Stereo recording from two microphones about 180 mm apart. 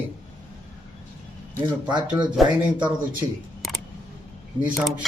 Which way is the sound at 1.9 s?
25° right (ahead or behind).